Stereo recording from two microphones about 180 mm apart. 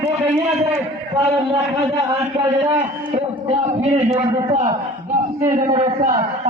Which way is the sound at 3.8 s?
40° right (ahead or behind).